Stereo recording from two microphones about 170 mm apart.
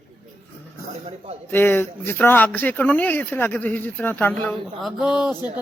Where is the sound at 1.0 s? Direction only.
40° right (ahead or behind).